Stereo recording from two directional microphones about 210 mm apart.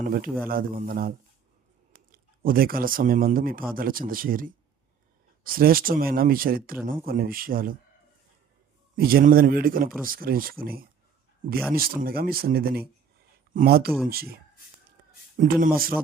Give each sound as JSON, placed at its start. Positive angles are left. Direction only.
{"t": 0.0, "sound": "speech", "side_deg": -45}
{"t": 9.0, "sound": "speech", "side_deg": -45}